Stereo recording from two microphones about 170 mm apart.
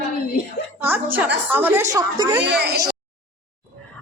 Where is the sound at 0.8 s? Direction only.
10° right (ahead or behind).